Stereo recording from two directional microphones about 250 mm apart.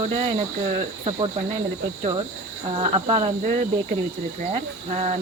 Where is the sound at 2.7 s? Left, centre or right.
Right.